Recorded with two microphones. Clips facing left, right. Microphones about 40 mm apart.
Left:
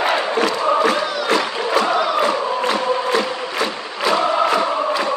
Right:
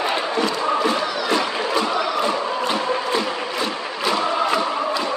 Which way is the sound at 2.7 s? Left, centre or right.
Left.